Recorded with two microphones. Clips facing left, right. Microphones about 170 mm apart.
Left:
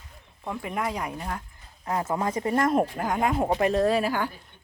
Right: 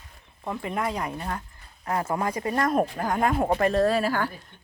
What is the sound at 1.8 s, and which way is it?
A woman's voice, 20° left (ahead or behind).